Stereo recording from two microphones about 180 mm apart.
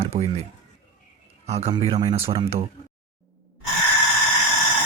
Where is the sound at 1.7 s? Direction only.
25° right (ahead or behind).